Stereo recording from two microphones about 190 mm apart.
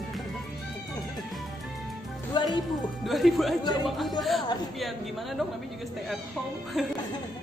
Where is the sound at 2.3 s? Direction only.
20° left (ahead or behind).